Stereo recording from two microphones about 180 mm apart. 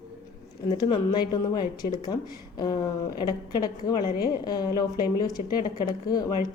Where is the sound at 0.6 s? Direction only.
25° left (ahead or behind).